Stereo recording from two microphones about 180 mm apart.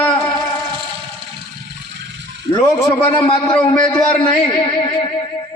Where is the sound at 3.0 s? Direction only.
30° left (ahead or behind).